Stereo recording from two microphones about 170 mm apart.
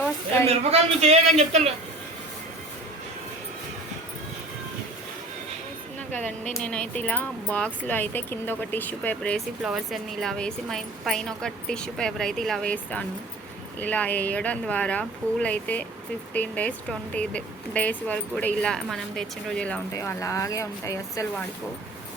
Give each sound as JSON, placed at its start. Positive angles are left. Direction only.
{"t": 0.4, "sound": "a man's voice", "side_deg": -40}
{"t": 6.1, "sound": "speech", "side_deg": 10}
{"t": 9.6, "sound": "a woman's voice", "side_deg": 0}
{"t": 19.9, "sound": "speech", "side_deg": 15}